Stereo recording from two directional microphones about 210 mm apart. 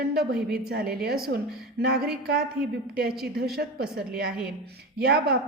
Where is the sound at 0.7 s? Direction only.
45° right (ahead or behind).